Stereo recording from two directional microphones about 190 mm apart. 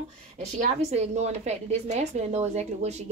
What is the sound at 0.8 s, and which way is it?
A woman's voice, 35° right (ahead or behind).